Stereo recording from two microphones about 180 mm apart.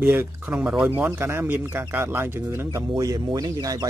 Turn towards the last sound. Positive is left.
turn(degrees=-20)  # may be behind; listen again after turning